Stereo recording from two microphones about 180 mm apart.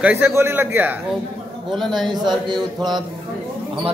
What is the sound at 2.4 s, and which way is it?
Mantra, 25° right (ahead or behind).